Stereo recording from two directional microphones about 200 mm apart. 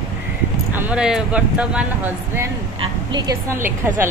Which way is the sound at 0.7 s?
10° right (ahead or behind).